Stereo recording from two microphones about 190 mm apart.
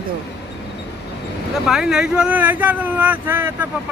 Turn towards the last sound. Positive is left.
turn(degrees=-10)  # may be behind; listen again after turning